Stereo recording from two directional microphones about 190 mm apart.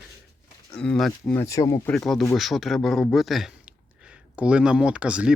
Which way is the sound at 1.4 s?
15° left (ahead or behind).